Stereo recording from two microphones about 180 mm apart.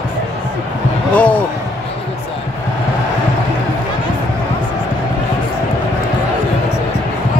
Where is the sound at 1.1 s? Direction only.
5° left (ahead or behind).